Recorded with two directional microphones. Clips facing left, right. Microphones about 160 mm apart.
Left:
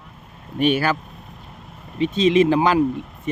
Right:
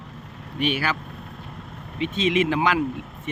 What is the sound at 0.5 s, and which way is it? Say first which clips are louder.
Speech: left 6 dB; 45° left (ahead or behind).